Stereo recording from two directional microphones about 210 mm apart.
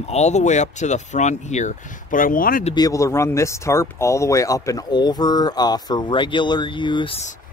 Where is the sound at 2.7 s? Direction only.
15° left (ahead or behind).